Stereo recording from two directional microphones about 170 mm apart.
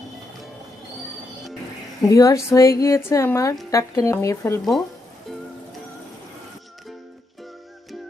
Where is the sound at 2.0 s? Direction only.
20° left (ahead or behind).